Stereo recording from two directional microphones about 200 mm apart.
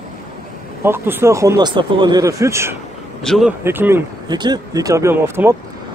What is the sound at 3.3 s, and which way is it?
Speech, centre (ahead or behind).